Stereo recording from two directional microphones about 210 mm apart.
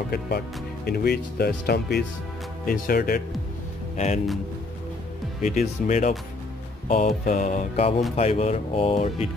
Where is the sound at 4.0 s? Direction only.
30° left (ahead or behind).